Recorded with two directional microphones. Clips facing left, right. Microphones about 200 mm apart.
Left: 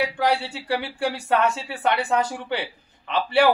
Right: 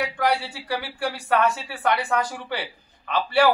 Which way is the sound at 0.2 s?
25° left (ahead or behind).